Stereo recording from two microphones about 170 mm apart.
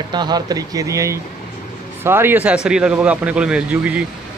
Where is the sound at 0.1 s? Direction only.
25° right (ahead or behind).